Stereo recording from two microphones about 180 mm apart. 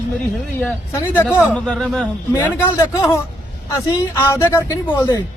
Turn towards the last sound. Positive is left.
turn(degrees=20)  # may be behind; listen again after turning